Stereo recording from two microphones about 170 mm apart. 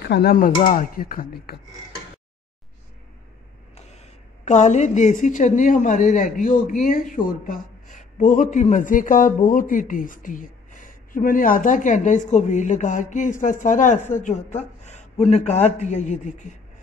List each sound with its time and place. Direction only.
0.0 s speech: 70° left (ahead or behind)
4.5 s a man's voice: 45° left (ahead or behind)